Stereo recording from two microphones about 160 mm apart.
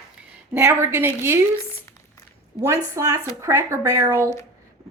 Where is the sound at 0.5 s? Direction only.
15° right (ahead or behind).